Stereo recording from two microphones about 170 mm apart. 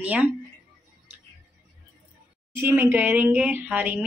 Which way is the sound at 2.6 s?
15° right (ahead or behind).